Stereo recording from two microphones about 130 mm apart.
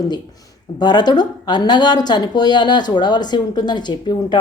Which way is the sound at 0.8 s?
35° left (ahead or behind).